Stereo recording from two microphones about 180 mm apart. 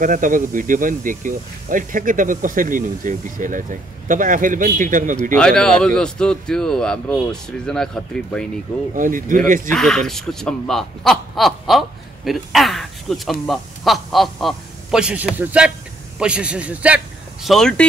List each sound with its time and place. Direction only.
0.0 s speech: 45° right (ahead or behind)
5.3 s speech: 5° left (ahead or behind)
8.9 s speech: 50° right (ahead or behind)
9.8 s speech: centre (ahead or behind)